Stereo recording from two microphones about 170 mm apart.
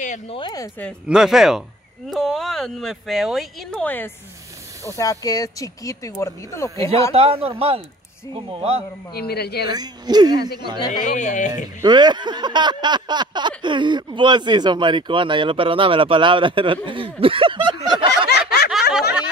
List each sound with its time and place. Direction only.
0.3 s speech: 25° left (ahead or behind)
1.0 s speech: 5° right (ahead or behind); by 6.9 s 15° left (ahead or behind)
7.1 s a man's voice: 35° right (ahead or behind)
9.1 s speech: 70° left (ahead or behind)
9.7 s a sound: 25° right (ahead or behind)
10.9 s speech: 45° left (ahead or behind)
11.8 s a sound: 25° right (ahead or behind)
18.3 s snicker: 70° left (ahead or behind)
18.7 s snicker: centre (ahead or behind)